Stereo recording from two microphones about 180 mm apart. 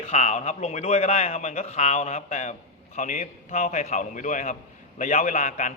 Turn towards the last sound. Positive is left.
turn(degrees=40)  # may be behind; listen again after turning